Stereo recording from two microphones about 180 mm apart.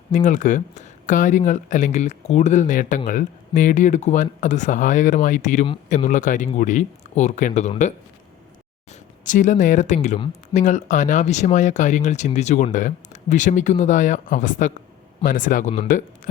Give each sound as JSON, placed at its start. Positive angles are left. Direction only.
{"t": 0.1, "sound": "speech", "side_deg": 45}